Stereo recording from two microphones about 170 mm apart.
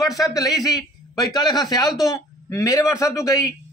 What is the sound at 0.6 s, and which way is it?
Speech, 20° left (ahead or behind).